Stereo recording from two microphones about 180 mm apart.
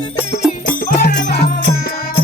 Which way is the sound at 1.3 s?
60° left (ahead or behind).